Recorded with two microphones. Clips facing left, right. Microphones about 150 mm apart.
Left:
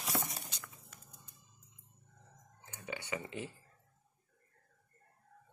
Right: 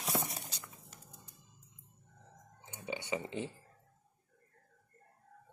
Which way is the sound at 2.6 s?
20° right (ahead or behind).